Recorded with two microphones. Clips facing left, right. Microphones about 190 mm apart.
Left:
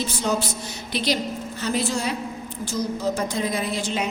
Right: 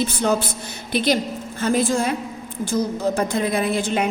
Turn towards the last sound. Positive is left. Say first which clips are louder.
# right 5 dB
turn(degrees=-55)  # may be behind; listen again after turning